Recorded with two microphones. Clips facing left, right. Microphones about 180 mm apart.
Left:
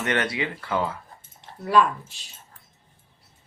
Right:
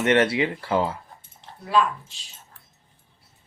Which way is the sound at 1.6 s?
60° left (ahead or behind).